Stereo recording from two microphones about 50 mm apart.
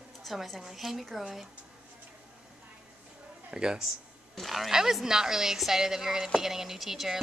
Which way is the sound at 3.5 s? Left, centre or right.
Centre.